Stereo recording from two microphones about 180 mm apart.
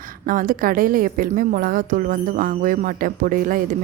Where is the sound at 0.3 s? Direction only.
50° right (ahead or behind).